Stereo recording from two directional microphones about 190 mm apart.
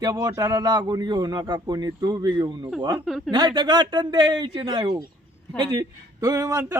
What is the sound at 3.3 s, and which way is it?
A man's voice, 25° right (ahead or behind).